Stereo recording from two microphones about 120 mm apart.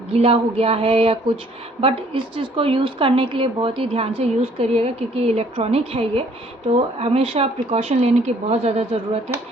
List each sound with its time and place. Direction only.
0.1 s a woman's voice: 55° right (ahead or behind)